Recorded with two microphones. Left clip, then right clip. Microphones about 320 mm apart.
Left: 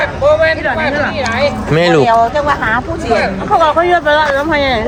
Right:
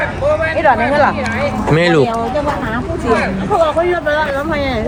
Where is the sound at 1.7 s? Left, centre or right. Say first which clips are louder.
Left 2 dB; centre.